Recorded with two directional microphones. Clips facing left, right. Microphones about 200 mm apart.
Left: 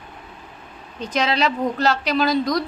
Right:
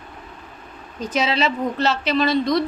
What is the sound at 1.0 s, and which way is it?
A woman's voice, 5° right (ahead or behind).